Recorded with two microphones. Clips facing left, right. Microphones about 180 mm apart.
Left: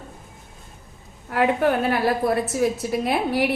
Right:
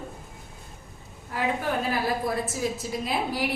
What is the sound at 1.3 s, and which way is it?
A woman's voice, 70° left (ahead or behind).